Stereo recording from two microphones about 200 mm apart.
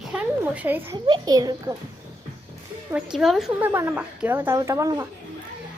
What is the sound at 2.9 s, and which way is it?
A woman's voice, centre (ahead or behind).